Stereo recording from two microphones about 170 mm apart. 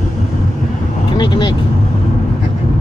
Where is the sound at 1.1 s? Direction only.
25° left (ahead or behind).